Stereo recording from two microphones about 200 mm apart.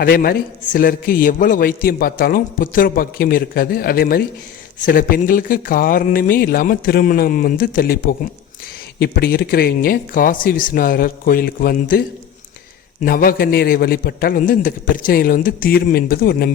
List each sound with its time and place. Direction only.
0.0 s a man's voice: 50° left (ahead or behind)
13.1 s a man's voice: 45° left (ahead or behind)